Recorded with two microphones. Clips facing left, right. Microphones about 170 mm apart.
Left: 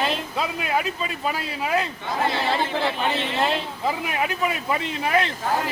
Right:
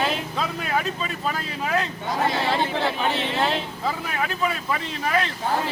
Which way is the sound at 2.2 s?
Centre (ahead or behind).